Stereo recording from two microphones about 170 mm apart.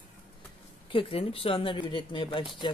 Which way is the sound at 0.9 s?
35° left (ahead or behind).